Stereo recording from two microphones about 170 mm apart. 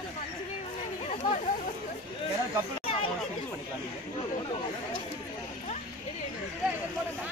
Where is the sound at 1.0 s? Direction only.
45° left (ahead or behind).